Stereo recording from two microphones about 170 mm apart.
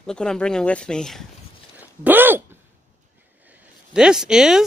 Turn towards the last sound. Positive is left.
turn(degrees=-5)  # may be behind; listen again after turning